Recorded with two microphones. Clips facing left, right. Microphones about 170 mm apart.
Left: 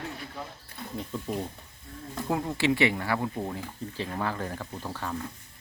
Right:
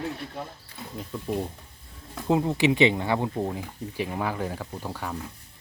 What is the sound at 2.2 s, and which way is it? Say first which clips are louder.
Speech: right 5 dB; 20° right (ahead or behind).